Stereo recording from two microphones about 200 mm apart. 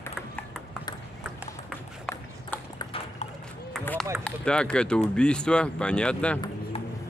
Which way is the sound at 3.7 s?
Centre (ahead or behind).